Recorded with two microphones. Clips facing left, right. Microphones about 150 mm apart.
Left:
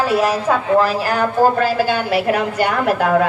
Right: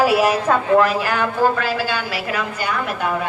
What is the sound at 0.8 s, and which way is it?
A woman's voice, 35° left (ahead or behind).